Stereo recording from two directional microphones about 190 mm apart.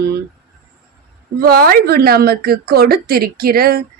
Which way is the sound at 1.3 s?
55° right (ahead or behind).